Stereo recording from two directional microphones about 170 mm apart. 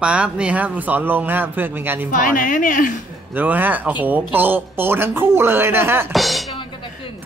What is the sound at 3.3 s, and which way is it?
Speech, 10° right (ahead or behind).